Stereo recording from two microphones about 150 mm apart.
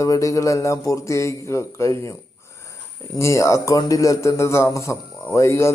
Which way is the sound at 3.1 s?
20° left (ahead or behind).